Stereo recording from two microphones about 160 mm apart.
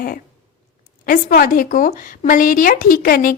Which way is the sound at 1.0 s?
60° left (ahead or behind).